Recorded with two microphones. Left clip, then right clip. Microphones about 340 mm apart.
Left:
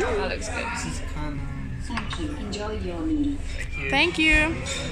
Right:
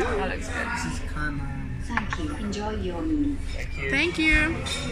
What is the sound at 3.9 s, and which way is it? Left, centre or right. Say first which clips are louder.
Speech: left 2 dB; centre.